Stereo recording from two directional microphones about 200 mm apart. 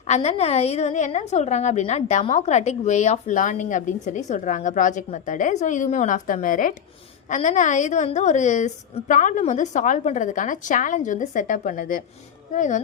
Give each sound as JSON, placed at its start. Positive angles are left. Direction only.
{"t": 0.1, "sound": "a woman's voice", "side_deg": 30}